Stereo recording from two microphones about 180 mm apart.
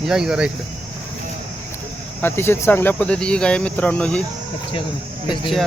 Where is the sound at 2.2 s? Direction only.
10° left (ahead or behind).